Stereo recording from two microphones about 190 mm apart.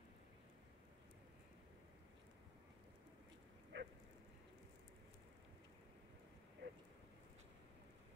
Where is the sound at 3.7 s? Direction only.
75° right (ahead or behind).